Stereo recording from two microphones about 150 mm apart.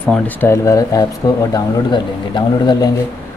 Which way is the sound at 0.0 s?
10° left (ahead or behind).